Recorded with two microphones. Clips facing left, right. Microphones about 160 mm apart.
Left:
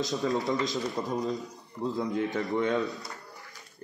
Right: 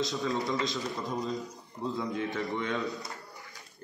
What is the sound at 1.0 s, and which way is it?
Speech, 35° left (ahead or behind).